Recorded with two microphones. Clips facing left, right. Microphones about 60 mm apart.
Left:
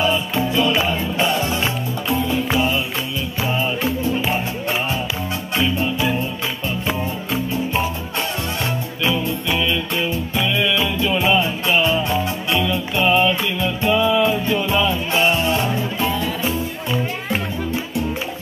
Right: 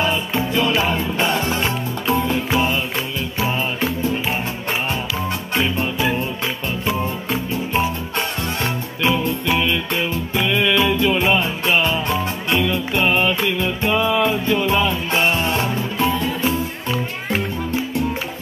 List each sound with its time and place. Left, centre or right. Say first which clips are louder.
0.0 s music: left 1 dB; right
5.6 s music: left 1 dB; right
9.0 s music: right 2 dB; right